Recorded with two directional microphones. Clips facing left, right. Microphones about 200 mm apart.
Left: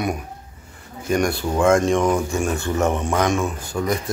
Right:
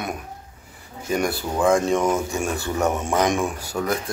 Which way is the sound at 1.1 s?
5° right (ahead or behind).